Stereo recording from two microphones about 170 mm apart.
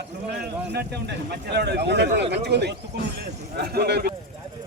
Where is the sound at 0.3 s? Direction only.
75° right (ahead or behind).